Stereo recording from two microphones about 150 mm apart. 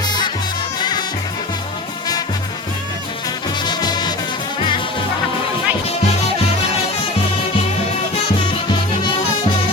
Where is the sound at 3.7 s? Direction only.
30° left (ahead or behind).